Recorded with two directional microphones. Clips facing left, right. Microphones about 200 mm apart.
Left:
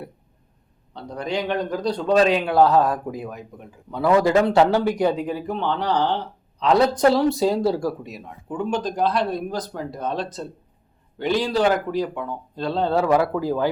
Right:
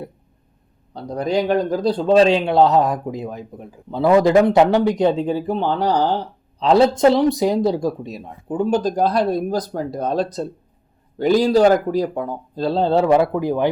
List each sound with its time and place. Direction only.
0.9 s a man's voice: 40° right (ahead or behind); by 13.7 s 20° right (ahead or behind)